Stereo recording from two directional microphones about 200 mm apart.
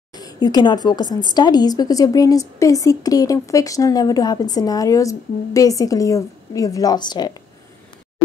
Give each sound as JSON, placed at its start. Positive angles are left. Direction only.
{"t": 0.1, "sound": "a woman's voice", "side_deg": 20}